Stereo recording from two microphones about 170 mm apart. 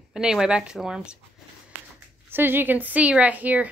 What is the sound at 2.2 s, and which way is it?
Speech, 10° right (ahead or behind).